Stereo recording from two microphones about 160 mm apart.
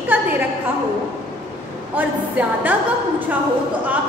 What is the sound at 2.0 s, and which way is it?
Speech, 10° right (ahead or behind).